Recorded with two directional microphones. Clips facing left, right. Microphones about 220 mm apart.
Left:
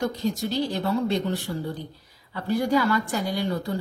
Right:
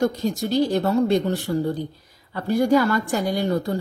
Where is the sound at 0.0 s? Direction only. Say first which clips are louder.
Right 4 dB; 45° right (ahead or behind).